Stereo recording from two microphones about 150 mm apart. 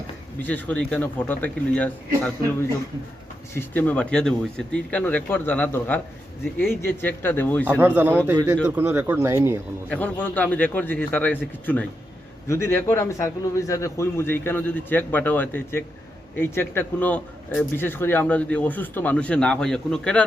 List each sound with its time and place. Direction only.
0.4 s speech: 10° left (ahead or behind)
3.5 s speech: 15° left (ahead or behind)
7.6 s speech: 10° right (ahead or behind)
9.9 s speech: 10° left (ahead or behind)